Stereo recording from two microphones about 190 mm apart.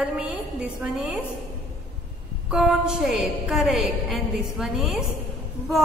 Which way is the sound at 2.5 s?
5° right (ahead or behind).